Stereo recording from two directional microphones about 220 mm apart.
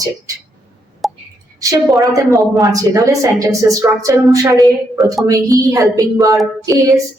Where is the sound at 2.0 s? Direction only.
15° right (ahead or behind).